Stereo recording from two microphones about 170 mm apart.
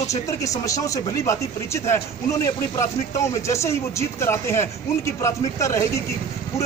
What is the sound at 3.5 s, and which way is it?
Speech, 15° left (ahead or behind).